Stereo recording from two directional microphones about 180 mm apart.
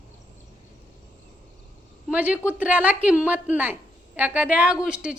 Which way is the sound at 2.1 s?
10° right (ahead or behind).